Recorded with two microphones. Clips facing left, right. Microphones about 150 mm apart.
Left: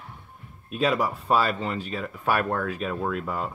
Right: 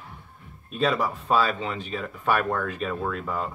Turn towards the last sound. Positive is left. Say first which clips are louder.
# left 1 dB
turn(degrees=5)  # may be behind; listen again after turning